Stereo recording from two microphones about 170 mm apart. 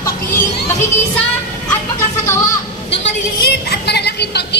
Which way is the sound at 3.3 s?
65° left (ahead or behind).